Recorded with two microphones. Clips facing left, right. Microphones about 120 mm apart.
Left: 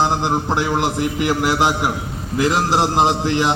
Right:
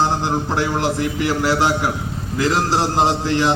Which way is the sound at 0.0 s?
15° left (ahead or behind).